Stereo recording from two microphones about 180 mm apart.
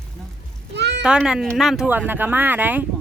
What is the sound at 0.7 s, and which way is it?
Speech, 70° right (ahead or behind).